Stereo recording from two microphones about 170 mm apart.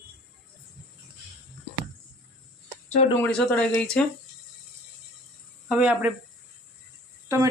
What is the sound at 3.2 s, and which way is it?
Speech, 5° left (ahead or behind).